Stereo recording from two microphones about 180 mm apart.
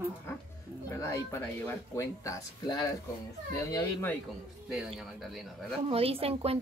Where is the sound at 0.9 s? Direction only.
15° left (ahead or behind).